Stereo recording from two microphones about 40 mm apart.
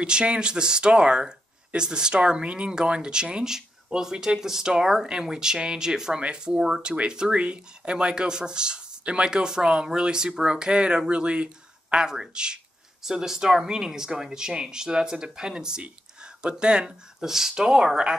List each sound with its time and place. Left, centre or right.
0.0 s speech: right